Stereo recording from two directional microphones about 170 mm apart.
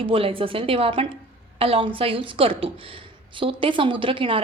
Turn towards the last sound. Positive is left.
turn(degrees=-30)  # may be behind; listen again after turning